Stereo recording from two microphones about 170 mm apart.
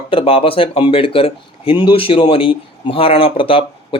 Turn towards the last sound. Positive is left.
turn(degrees=30)  # may be behind; listen again after turning